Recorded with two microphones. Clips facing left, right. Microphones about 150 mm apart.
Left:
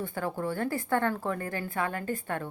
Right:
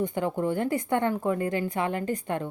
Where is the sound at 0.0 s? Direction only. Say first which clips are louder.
Right 5 dB; 20° right (ahead or behind).